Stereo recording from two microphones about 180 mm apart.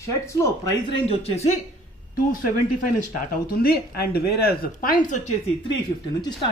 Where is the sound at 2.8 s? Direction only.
50° left (ahead or behind).